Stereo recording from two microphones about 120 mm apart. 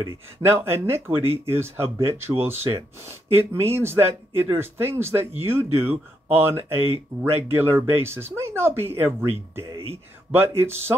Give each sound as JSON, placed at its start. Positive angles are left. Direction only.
{"t": 0.5, "sound": "speech", "side_deg": -20}
{"t": 10.3, "sound": "speech", "side_deg": -20}